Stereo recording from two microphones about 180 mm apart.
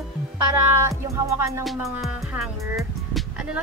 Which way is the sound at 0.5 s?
15° right (ahead or behind).